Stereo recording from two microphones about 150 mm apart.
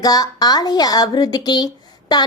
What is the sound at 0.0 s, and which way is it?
Speech, 25° left (ahead or behind).